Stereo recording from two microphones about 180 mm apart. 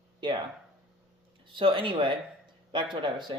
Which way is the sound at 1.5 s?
30° right (ahead or behind).